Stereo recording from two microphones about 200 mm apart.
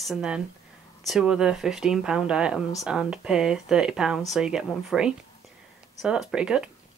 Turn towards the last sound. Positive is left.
turn(degrees=-5)  # may be behind; listen again after turning